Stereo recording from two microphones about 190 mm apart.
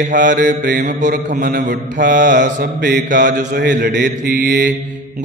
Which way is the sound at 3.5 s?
55° right (ahead or behind).